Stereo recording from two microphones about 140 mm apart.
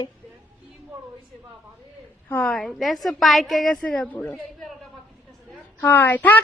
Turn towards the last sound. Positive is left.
turn(degrees=10)  # may be behind; listen again after turning